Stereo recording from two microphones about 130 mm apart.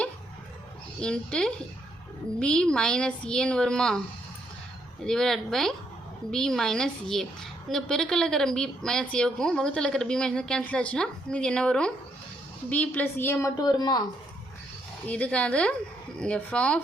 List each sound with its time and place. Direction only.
0.9 s a woman's voice: 5° left (ahead or behind)
5.0 s a woman's voice: 5° left (ahead or behind); by 14.0 s 30° left (ahead or behind)
15.0 s a woman's voice: 10° left (ahead or behind)